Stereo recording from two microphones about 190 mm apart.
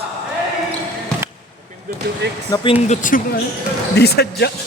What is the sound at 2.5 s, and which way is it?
Speech, 30° left (ahead or behind).